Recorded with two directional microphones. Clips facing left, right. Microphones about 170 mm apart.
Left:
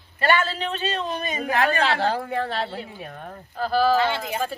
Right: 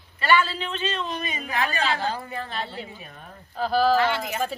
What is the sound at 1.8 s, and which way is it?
Speech, 70° left (ahead or behind).